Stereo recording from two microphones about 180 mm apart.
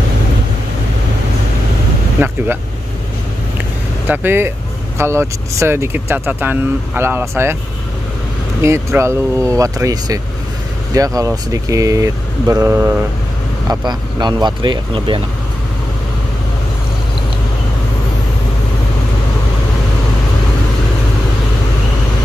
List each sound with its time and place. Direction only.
2.1 s speech: 10° right (ahead or behind)
4.1 s speech: 10° right (ahead or behind)
8.5 s speech: 15° right (ahead or behind)
13.7 s speech: 25° right (ahead or behind)